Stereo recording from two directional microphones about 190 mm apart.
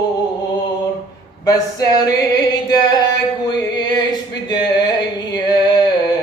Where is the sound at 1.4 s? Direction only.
20° left (ahead or behind).